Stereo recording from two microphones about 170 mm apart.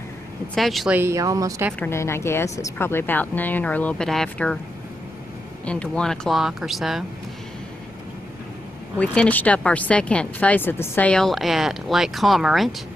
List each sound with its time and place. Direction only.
0.6 s speech: centre (ahead or behind)
0.9 s speech: 15° right (ahead or behind)
1.8 s speech: 15° left (ahead or behind)
5.7 s speech: 5° left (ahead or behind)
8.9 s speech: 5° left (ahead or behind)